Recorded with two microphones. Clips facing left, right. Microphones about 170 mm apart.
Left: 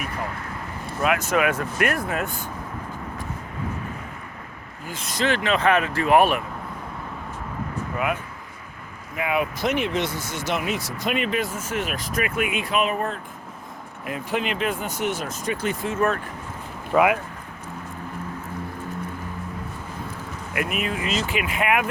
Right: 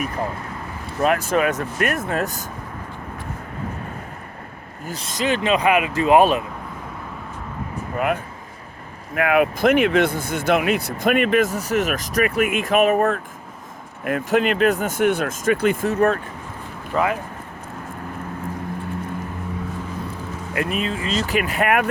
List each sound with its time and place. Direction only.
1.0 s speech: 35° right (ahead or behind)
1.9 s speech: 25° right (ahead or behind)
2.1 s speech: 40° right (ahead or behind)
5.0 s speech: 20° right (ahead or behind)
7.9 s speech: 45° right (ahead or behind)
9.1 s speech: 65° right (ahead or behind)
15.9 s speech: 35° right (ahead or behind)
16.9 s speech: 10° left (ahead or behind)
20.5 s speech: 35° right (ahead or behind)